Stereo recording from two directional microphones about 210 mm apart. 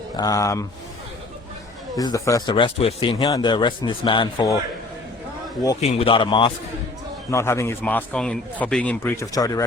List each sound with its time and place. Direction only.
0.2 s a man's voice: 15° left (ahead or behind)
2.0 s speech: 15° left (ahead or behind)
5.8 s a man's voice: 30° left (ahead or behind)